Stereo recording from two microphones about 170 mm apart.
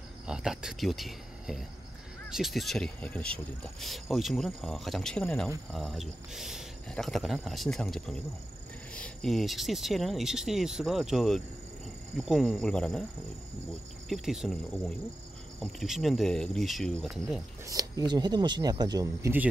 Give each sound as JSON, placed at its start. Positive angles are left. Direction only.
{"t": 0.3, "sound": "speech", "side_deg": -5}
{"t": 14.0, "sound": "speech", "side_deg": 0}
{"t": 17.6, "sound": "speech", "side_deg": -20}